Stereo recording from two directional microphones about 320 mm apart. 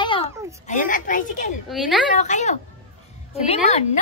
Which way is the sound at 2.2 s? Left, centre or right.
Left.